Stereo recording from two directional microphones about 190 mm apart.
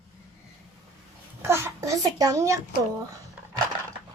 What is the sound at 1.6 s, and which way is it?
Speech, 15° right (ahead or behind).